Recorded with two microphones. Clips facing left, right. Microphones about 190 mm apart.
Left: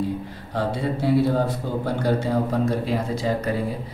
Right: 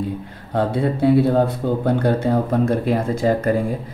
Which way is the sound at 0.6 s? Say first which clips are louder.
Right 6 dB; 55° right (ahead or behind).